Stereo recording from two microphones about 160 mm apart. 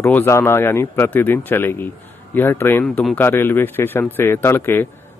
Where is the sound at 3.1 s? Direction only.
15° left (ahead or behind).